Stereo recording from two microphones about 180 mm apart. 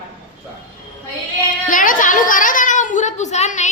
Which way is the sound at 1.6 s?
50° left (ahead or behind).